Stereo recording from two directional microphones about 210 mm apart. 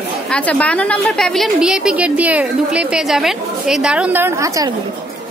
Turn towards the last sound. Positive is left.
turn(degrees=-15)  # may be behind; listen again after turning